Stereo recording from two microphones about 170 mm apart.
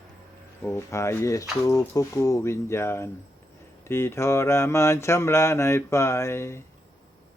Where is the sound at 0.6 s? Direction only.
15° left (ahead or behind).